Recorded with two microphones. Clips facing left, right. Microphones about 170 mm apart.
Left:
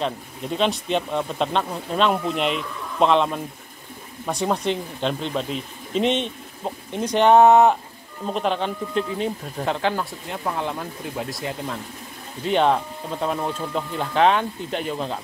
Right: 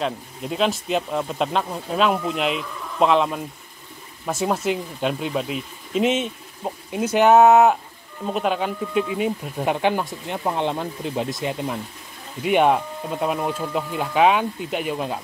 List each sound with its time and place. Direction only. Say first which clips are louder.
0.0 s speech: even; 5° right (ahead or behind)